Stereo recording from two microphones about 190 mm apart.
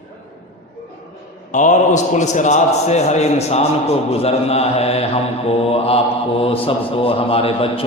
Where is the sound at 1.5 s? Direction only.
40° left (ahead or behind).